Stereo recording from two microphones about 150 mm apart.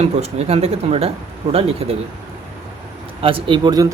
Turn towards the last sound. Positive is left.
turn(degrees=-25)  # may be behind; listen again after turning